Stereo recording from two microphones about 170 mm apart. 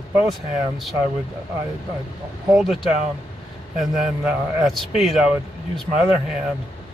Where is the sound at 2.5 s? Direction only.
Centre (ahead or behind).